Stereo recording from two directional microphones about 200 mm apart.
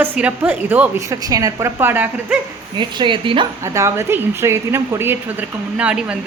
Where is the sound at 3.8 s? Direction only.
15° right (ahead or behind).